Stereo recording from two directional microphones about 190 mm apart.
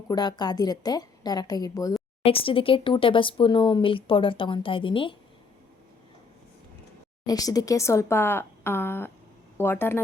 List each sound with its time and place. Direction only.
0.1 s speech: 20° left (ahead or behind)
2.2 s speech: 30° left (ahead or behind)
7.3 s speech: 20° left (ahead or behind)